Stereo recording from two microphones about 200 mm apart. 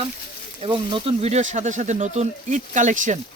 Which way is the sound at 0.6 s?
25° right (ahead or behind).